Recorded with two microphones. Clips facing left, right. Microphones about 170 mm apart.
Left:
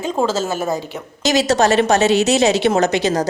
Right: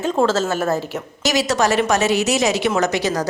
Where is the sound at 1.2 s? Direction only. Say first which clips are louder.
Left 3 dB; 25° left (ahead or behind).